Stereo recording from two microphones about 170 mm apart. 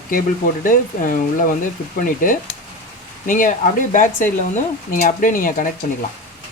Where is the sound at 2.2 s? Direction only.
50° left (ahead or behind).